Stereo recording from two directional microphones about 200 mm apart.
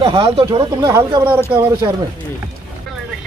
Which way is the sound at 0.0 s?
25° right (ahead or behind).